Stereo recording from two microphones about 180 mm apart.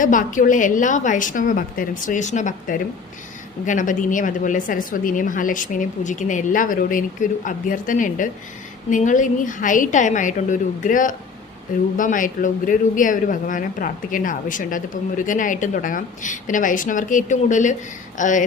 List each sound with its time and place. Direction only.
0.0 s speech: 45° left (ahead or behind)